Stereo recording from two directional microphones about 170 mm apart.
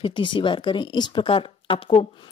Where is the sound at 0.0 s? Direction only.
30° left (ahead or behind).